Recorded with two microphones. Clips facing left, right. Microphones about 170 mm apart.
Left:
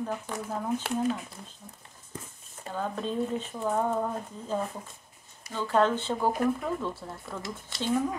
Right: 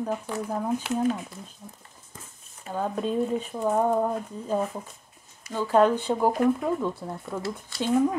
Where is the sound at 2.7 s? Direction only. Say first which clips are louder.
Right 4 dB; 10° right (ahead or behind).